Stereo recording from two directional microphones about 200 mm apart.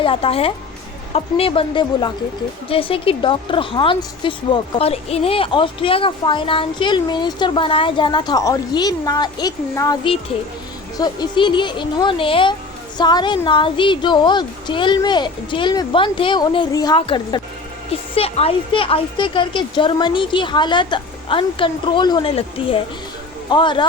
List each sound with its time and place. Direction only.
0.0 s a woman's voice: 25° left (ahead or behind)